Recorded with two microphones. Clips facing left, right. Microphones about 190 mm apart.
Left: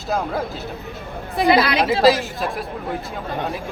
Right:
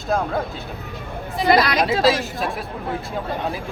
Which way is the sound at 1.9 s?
Centre (ahead or behind).